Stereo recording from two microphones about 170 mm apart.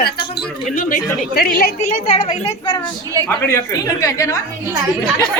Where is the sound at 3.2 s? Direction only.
15° left (ahead or behind).